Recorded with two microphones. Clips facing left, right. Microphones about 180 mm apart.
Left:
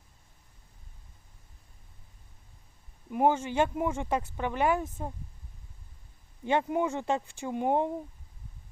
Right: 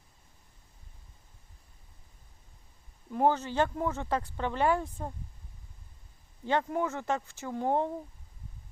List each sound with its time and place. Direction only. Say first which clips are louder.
3.1 s speech: left 1 dB; 10° left (ahead or behind)
6.4 s speech: left 2 dB; 15° left (ahead or behind)